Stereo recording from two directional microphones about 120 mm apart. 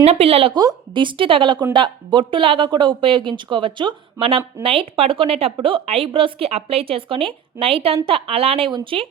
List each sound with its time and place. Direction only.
0.0 s a woman's voice: 55° right (ahead or behind)
0.5 s a woman's voice: 35° right (ahead or behind)